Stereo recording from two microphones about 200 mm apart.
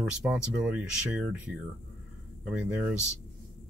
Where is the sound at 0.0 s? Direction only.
5° right (ahead or behind).